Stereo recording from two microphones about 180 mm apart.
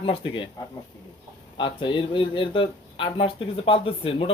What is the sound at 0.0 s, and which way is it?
Speech, 30° left (ahead or behind).